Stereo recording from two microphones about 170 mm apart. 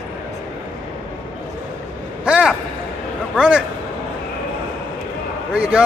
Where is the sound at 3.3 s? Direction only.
5° right (ahead or behind).